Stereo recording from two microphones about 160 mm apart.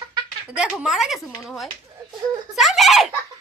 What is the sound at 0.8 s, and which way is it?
Speech, 5° right (ahead or behind).